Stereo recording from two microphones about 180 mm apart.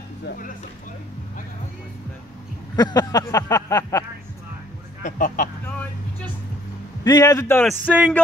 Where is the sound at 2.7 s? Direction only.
20° left (ahead or behind).